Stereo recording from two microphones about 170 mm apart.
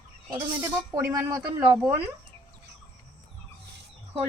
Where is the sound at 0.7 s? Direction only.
15° right (ahead or behind).